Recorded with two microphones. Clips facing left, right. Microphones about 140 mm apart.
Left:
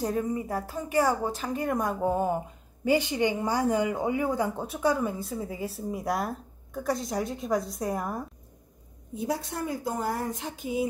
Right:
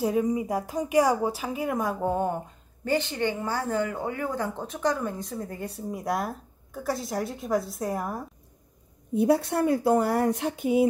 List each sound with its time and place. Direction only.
0.0 s speech: 10° right (ahead or behind)
9.1 s a woman's voice: 60° right (ahead or behind)